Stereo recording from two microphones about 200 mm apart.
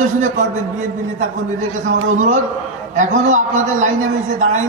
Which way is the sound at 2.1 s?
35° right (ahead or behind).